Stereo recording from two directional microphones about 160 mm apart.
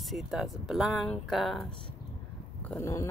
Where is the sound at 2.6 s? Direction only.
15° left (ahead or behind).